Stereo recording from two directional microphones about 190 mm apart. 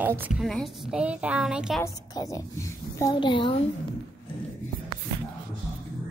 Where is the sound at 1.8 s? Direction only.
20° left (ahead or behind).